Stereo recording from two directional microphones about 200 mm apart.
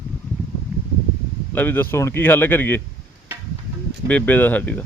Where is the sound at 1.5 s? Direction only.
10° left (ahead or behind).